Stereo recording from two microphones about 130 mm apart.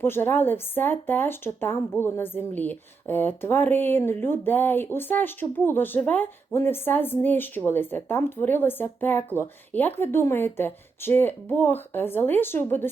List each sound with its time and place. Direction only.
0.0 s speech: 15° left (ahead or behind)